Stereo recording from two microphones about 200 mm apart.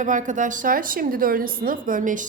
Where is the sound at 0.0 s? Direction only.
40° right (ahead or behind).